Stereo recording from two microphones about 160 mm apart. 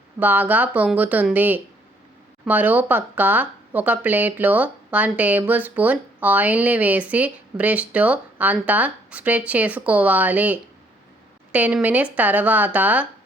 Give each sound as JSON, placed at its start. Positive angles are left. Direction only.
{"t": 0.2, "sound": "speech", "side_deg": -10}